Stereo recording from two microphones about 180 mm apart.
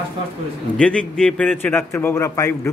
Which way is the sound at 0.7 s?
5° left (ahead or behind).